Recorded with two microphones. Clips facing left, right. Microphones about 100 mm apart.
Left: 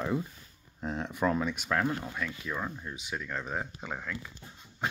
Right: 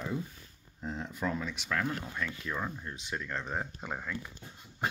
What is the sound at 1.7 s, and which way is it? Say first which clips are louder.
Speech: left 3 dB; 35° left (ahead or behind).